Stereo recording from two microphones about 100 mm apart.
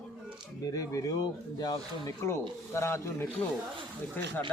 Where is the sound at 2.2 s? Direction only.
30° left (ahead or behind).